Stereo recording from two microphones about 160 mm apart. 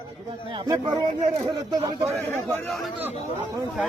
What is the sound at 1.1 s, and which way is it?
Speech, 40° right (ahead or behind).